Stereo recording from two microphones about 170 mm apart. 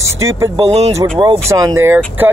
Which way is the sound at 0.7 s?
35° right (ahead or behind).